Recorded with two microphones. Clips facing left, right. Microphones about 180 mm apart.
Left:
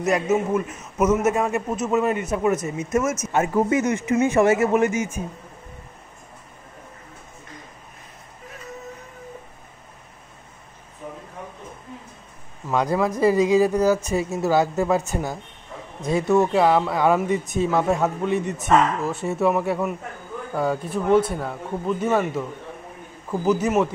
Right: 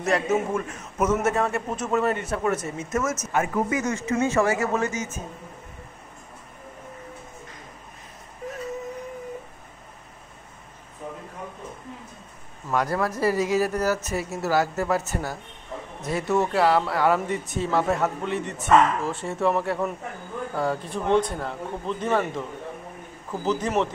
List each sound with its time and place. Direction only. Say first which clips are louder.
0.0 s a man's voice: left 2 dB; 5° left (ahead or behind)
12.7 s a man's voice: left 3 dB; 20° left (ahead or behind)
23.4 s a man's voice: left 4 dB; 10° left (ahead or behind)